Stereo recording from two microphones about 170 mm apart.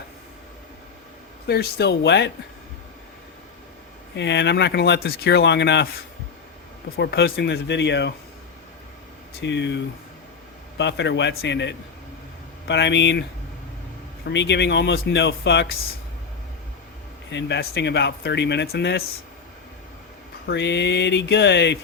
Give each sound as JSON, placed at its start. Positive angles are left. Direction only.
{"t": 1.5, "sound": "speech", "side_deg": 75}
{"t": 4.1, "sound": "speech", "side_deg": 90}
{"t": 6.9, "sound": "speech", "side_deg": 70}
{"t": 9.4, "sound": "speech", "side_deg": 90}
{"t": 14.3, "sound": "speech", "side_deg": 90}
{"t": 17.3, "sound": "speech", "side_deg": 85}
{"t": 20.5, "sound": "speech", "side_deg": 90}